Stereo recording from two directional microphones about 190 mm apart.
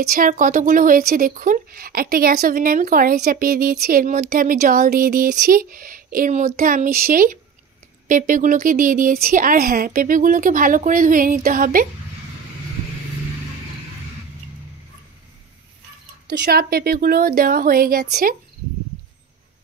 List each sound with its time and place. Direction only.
0.0 s speech: 50° right (ahead or behind)
16.3 s speech: 55° right (ahead or behind)